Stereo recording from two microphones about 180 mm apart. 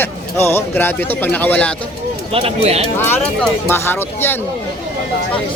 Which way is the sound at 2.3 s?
30° right (ahead or behind).